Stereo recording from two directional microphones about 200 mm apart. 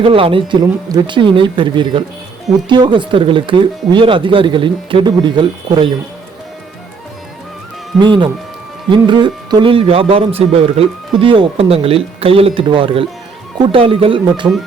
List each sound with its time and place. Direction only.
0.0 s speech: 25° right (ahead or behind)
7.9 s speech: 25° right (ahead or behind)